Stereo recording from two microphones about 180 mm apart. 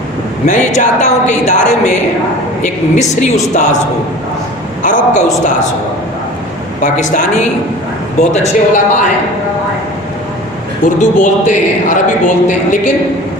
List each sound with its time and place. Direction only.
0.4 s speech: 45° left (ahead or behind)
4.8 s a man's voice: 45° left (ahead or behind)
6.8 s speech: 40° left (ahead or behind)
10.8 s a man's voice: 45° left (ahead or behind)